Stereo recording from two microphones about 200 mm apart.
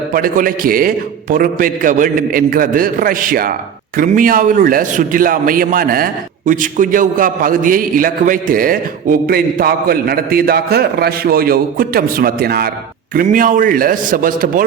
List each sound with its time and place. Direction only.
0.1 s a man's voice: 45° right (ahead or behind)